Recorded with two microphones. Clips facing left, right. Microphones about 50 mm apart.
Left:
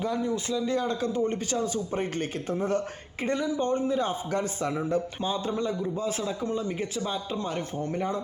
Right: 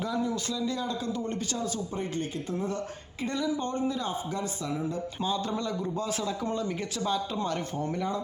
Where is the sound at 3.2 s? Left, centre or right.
Left.